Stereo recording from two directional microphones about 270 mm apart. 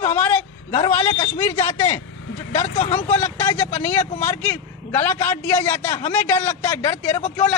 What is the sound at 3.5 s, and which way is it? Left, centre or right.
A man's voice, centre.